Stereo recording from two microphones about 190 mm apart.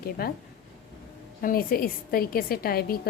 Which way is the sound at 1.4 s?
50° left (ahead or behind).